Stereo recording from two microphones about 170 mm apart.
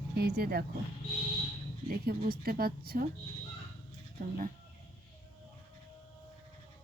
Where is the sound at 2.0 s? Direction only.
60° right (ahead or behind).